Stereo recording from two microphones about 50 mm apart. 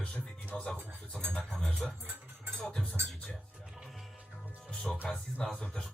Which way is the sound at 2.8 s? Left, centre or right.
Left.